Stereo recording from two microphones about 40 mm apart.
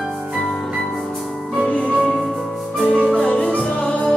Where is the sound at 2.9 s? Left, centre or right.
Left.